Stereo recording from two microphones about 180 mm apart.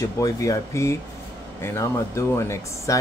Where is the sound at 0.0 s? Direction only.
20° left (ahead or behind).